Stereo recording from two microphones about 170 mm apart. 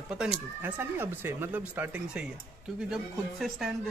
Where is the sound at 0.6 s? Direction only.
10° right (ahead or behind).